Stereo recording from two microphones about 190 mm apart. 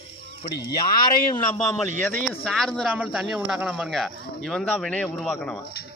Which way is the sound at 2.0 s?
10° left (ahead or behind).